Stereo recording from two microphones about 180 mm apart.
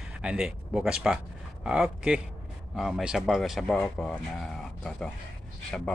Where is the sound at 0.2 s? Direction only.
5° right (ahead or behind).